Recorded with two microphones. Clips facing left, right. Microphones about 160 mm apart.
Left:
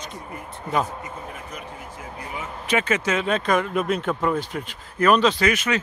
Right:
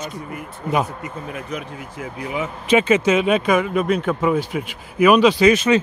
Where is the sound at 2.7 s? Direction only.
20° right (ahead or behind).